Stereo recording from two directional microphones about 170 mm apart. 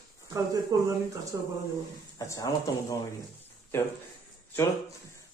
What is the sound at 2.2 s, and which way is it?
Speech, 20° left (ahead or behind).